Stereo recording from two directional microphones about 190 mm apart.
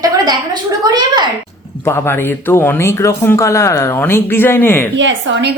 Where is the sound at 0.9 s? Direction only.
20° right (ahead or behind).